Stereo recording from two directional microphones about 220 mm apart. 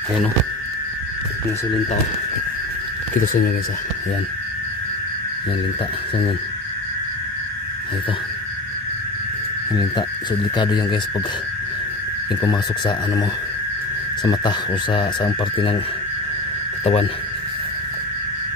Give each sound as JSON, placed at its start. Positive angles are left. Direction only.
{"t": 10.5, "sound": "speech", "side_deg": 20}
{"t": 12.4, "sound": "speech", "side_deg": 20}
{"t": 14.2, "sound": "speech", "side_deg": 20}
{"t": 16.8, "sound": "speech", "side_deg": 30}